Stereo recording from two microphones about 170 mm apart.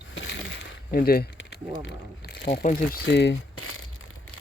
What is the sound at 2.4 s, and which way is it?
Speech, 60° left (ahead or behind).